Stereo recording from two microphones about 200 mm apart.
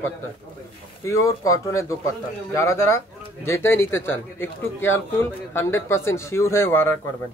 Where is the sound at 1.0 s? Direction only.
15° left (ahead or behind).